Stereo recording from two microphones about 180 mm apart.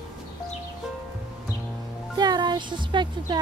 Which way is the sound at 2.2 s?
25° right (ahead or behind).